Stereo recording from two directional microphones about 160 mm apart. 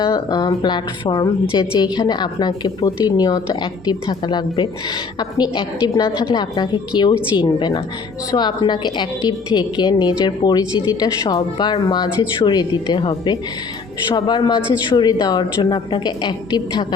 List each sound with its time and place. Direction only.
0.0 s a woman's voice: 25° left (ahead or behind)